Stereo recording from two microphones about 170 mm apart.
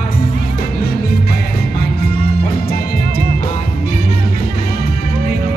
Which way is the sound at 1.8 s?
65° left (ahead or behind).